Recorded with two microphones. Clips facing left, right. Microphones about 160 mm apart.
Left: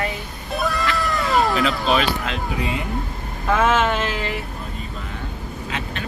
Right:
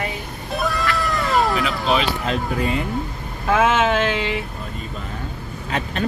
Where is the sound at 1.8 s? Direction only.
20° right (ahead or behind).